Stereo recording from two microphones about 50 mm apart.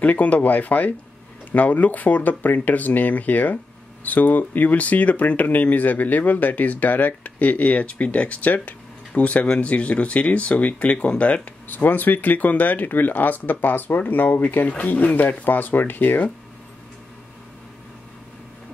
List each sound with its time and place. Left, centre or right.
0.0 s speech: left